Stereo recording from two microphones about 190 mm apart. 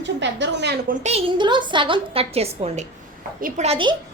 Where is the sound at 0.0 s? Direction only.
70° right (ahead or behind).